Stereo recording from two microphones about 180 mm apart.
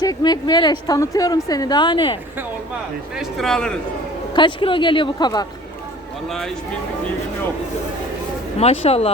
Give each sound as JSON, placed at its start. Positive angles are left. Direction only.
{"t": 0.0, "sound": "a woman's voice", "side_deg": 20}
{"t": 3.2, "sound": "speech", "side_deg": 0}
{"t": 4.4, "sound": "a woman's voice", "side_deg": 25}
{"t": 6.2, "sound": "speech", "side_deg": 0}
{"t": 8.5, "sound": "speech", "side_deg": 35}